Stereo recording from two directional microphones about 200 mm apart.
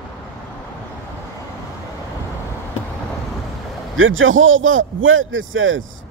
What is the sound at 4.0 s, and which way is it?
A man's voice, 80° right.